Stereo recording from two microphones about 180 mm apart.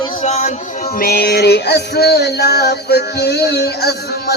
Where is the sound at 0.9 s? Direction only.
60° left (ahead or behind).